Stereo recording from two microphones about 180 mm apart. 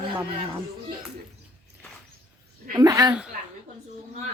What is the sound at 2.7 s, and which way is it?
Speech, 20° right (ahead or behind).